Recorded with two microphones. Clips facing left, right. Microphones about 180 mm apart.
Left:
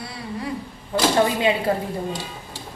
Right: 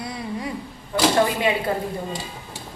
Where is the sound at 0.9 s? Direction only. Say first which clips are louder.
Even; 30° left (ahead or behind).